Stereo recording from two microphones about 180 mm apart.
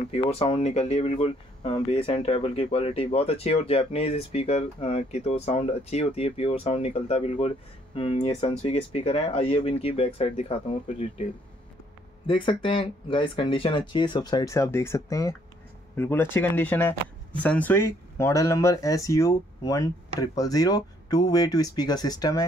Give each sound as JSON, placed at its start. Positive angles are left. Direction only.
{"t": 0.1, "sound": "speech", "side_deg": 30}
{"t": 12.3, "sound": "speech", "side_deg": 30}